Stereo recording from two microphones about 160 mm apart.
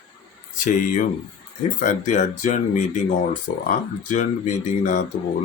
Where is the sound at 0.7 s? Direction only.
55° left (ahead or behind).